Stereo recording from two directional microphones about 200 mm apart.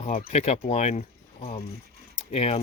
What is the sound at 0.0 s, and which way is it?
Speech, 35° left (ahead or behind).